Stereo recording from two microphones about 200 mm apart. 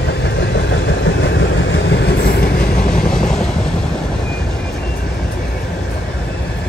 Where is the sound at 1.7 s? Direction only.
65° left (ahead or behind).